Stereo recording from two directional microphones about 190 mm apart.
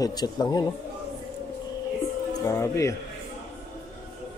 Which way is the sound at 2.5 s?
15° left (ahead or behind).